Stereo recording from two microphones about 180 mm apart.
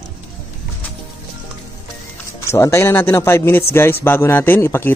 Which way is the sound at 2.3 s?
15° left (ahead or behind).